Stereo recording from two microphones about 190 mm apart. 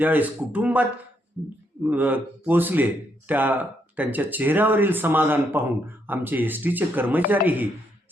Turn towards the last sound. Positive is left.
turn(degrees=-10)  # may be behind; listen again after turning